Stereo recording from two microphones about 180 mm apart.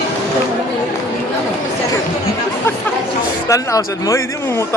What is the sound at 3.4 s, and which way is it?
Speech, 20° left (ahead or behind).